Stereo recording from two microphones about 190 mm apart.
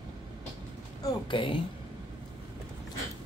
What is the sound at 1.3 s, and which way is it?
Speech, 25° left (ahead or behind).